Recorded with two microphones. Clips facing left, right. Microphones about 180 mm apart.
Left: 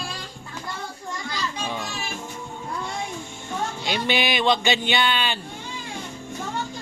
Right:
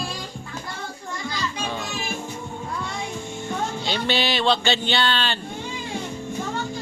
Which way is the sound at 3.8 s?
15° left (ahead or behind).